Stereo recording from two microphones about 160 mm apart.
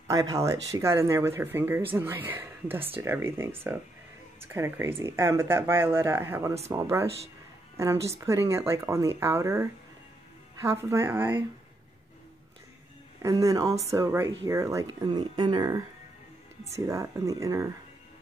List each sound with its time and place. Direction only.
0.1 s speech: 20° right (ahead or behind)
13.2 s speech: 20° right (ahead or behind)